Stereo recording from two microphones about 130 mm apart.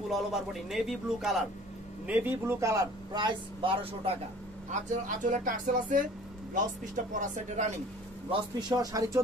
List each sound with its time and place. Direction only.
0.1 s a man's voice: centre (ahead or behind)
2.0 s speech: 15° right (ahead or behind); by 3.7 s 35° right (ahead or behind)
4.6 s speech: 90° right
7.2 s speech: 70° right (ahead or behind)
8.3 s speech: 35° right (ahead or behind)